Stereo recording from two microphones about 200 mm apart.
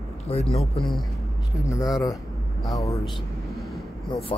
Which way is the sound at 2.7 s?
15° left (ahead or behind).